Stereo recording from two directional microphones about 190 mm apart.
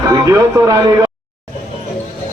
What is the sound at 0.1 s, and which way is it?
Speech, 20° right (ahead or behind).